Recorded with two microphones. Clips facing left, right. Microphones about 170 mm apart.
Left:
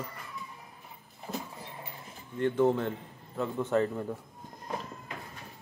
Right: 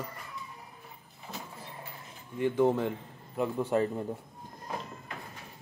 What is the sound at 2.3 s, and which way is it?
A man's voice, 10° right (ahead or behind).